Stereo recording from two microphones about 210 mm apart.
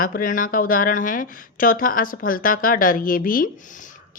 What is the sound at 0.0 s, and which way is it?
A woman's voice, 40° left (ahead or behind).